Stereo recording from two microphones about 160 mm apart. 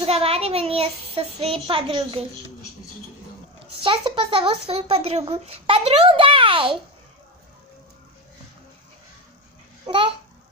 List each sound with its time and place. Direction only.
0.0 s speech: 40° right (ahead or behind)
3.8 s speech: 30° right (ahead or behind)
9.8 s a child's voice: 30° right (ahead or behind)